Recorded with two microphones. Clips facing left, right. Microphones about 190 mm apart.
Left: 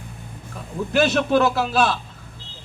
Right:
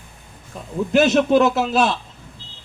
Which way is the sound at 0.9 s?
20° right (ahead or behind).